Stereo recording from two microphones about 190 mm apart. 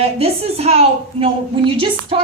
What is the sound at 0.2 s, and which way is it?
A woman's voice, 35° right (ahead or behind).